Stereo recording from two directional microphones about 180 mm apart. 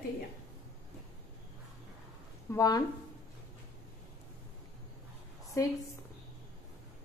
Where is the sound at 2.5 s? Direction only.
20° left (ahead or behind).